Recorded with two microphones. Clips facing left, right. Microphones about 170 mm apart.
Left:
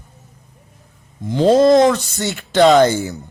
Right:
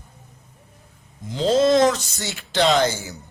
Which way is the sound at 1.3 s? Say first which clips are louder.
Left 6 dB; 55° left (ahead or behind).